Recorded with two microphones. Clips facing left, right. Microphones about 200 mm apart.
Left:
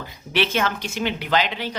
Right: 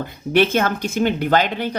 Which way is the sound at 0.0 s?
50° right (ahead or behind).